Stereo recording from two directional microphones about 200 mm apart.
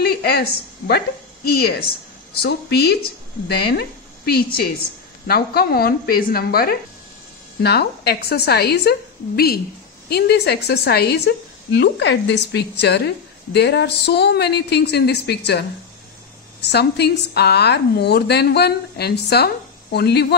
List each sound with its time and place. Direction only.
0.0 s a woman's voice: 50° left (ahead or behind)
5.2 s a woman's voice: 50° left (ahead or behind)
16.6 s a woman's voice: 55° left (ahead or behind)